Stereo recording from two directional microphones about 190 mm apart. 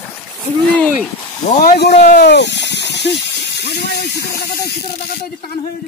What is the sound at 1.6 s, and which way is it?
Speech, 60° left (ahead or behind).